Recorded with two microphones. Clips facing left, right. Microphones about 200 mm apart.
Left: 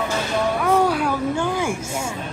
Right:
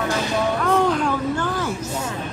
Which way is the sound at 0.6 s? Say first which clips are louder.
Left 1 dB; 10° left (ahead or behind).